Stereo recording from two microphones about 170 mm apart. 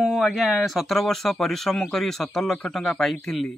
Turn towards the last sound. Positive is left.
turn(degrees=0)  # may be behind; listen again after turning